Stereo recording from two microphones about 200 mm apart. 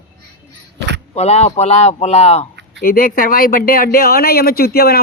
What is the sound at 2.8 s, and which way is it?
Speech, 45° left (ahead or behind).